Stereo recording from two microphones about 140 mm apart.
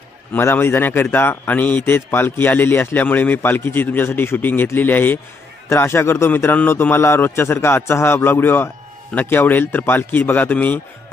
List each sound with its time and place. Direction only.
0.3 s a man's voice: 15° left (ahead or behind)